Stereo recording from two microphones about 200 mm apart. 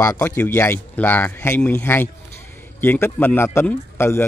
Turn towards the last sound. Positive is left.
turn(degrees=10)  # may be behind; listen again after turning